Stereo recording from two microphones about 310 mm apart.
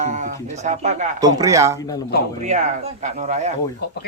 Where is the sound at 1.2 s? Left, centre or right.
Centre.